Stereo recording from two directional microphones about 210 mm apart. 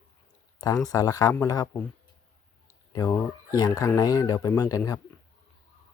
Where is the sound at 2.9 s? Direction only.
15° left (ahead or behind).